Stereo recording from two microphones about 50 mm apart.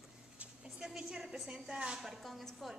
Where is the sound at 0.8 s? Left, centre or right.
Centre.